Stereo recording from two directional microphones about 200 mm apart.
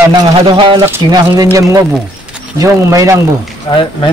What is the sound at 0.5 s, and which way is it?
Speech, 25° right (ahead or behind).